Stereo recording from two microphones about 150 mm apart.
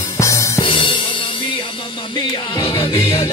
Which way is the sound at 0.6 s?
35° left (ahead or behind).